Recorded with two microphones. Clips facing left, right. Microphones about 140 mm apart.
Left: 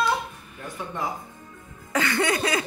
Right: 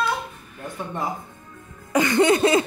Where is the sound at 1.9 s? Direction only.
20° right (ahead or behind).